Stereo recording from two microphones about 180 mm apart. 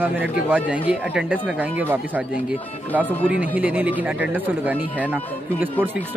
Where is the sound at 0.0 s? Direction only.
10° right (ahead or behind).